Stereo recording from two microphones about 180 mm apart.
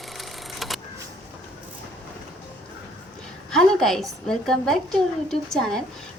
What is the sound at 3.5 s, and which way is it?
A woman's voice, centre (ahead or behind).